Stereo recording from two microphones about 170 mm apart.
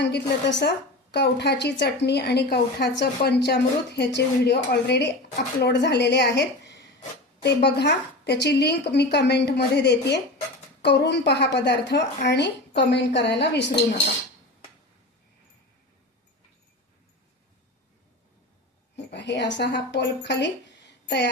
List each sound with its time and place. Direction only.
0.0 s a woman's voice: 80° left
7.4 s a woman's voice: 75° left (ahead or behind)
19.1 s speech: 90° left